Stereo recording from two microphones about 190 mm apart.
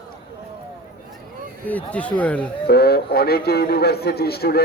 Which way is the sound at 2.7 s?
55° left (ahead or behind).